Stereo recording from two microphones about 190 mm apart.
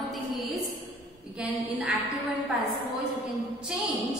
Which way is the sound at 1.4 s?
5° right (ahead or behind).